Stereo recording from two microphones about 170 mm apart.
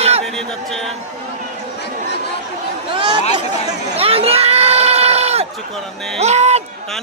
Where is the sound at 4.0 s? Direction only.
35° right (ahead or behind).